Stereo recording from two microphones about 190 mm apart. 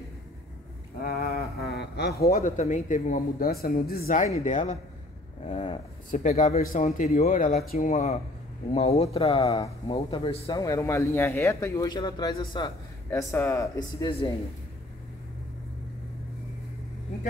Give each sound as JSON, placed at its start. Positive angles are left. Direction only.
{"t": 0.9, "sound": "speech", "side_deg": 55}
{"t": 10.6, "sound": "speech", "side_deg": 15}